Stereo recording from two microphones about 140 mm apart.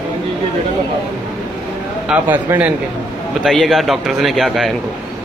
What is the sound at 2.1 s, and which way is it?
Speech, 10° right (ahead or behind).